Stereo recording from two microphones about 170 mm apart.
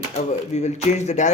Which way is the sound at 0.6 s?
40° left (ahead or behind).